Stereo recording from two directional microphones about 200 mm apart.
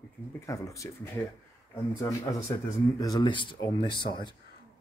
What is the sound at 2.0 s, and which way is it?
Speech, 15° left (ahead or behind).